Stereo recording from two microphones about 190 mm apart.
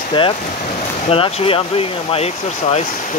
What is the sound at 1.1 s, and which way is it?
Speech, 30° left (ahead or behind).